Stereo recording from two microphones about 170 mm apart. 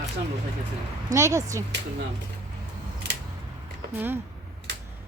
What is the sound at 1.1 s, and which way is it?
Speech, 15° right (ahead or behind).